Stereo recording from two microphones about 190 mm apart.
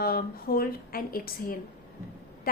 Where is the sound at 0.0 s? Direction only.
50° left (ahead or behind).